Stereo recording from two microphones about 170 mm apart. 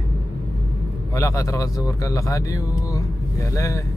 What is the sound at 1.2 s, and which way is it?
Speech, 20° left (ahead or behind).